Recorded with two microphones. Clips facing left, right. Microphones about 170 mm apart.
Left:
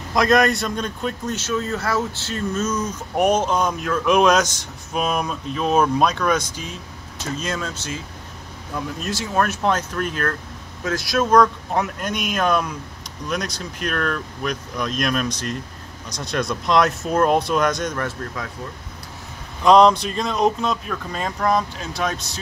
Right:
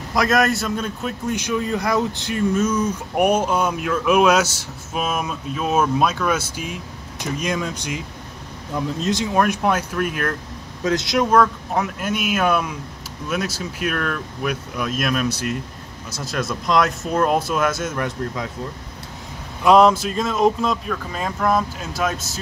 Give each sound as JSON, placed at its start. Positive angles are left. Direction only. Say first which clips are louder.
{"t": 0.1, "sound": "a man's voice", "louder": "left 1 dB", "side_deg": 0}
{"t": 11.3, "sound": "speech", "louder": "left 3 dB", "side_deg": 0}
{"t": 18.0, "sound": "a man's voice", "louder": "right 3 dB", "side_deg": -15}
{"t": 19.6, "sound": "speech", "louder": "even", "side_deg": -5}